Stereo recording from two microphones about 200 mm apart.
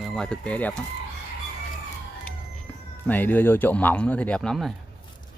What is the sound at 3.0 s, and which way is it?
Speech, 10° left (ahead or behind).